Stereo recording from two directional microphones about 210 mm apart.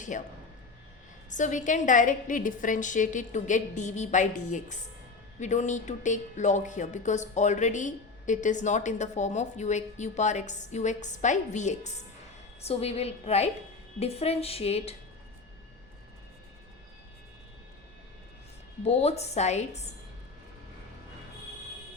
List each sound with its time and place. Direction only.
0.1 s speech: 40° left (ahead or behind)
1.3 s speech: 35° left (ahead or behind)
18.9 s speech: 30° left (ahead or behind)